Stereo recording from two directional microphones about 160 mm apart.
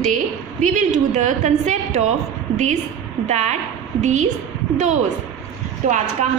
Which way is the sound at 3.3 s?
45° right (ahead or behind).